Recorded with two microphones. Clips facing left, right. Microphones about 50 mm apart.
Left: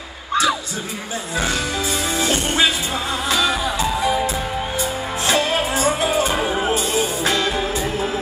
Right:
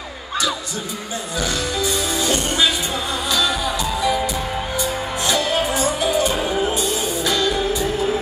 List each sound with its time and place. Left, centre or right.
1.8 s music: left
6.4 s music: centre